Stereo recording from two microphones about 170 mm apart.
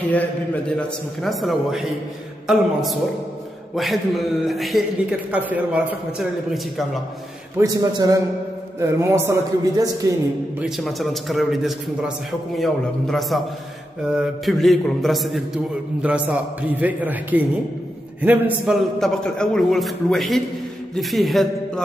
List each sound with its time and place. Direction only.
0.7 s a man's voice: centre (ahead or behind)
7.5 s a man's voice: 20° right (ahead or behind)
10.6 s a man's voice: centre (ahead or behind)